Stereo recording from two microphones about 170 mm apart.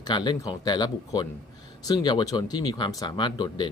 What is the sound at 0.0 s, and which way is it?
Speech, 25° left (ahead or behind).